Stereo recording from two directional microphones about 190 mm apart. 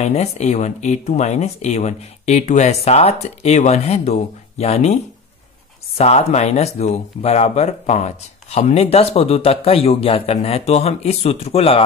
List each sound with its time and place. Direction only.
0.0 s speech: 35° left (ahead or behind)
5.9 s speech: 35° left (ahead or behind)